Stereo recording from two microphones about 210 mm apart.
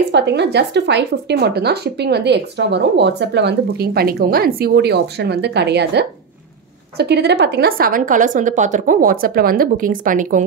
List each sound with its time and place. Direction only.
0.1 s speech: 55° right (ahead or behind); by 10.4 s 40° right (ahead or behind)